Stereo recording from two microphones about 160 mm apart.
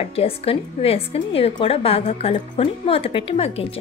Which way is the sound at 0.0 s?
35° left (ahead or behind).